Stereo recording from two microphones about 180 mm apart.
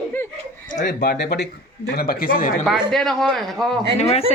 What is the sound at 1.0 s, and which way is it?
A man's voice, 65° left (ahead or behind).